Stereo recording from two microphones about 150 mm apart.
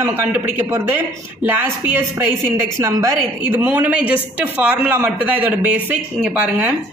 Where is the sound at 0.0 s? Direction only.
15° right (ahead or behind).